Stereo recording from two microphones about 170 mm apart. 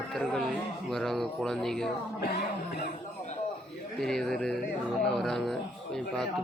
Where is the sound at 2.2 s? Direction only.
65° left (ahead or behind).